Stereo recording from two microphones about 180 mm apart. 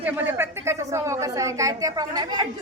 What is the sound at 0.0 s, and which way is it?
A woman's voice, 10° right (ahead or behind).